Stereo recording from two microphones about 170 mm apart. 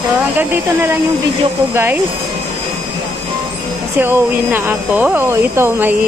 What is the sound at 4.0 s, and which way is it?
Speech, 10° right (ahead or behind).